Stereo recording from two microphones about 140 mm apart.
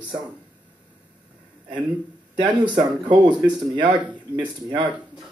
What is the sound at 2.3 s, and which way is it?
Speech, 35° right (ahead or behind).